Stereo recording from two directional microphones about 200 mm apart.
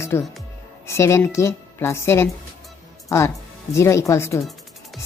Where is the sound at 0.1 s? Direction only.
15° left (ahead or behind).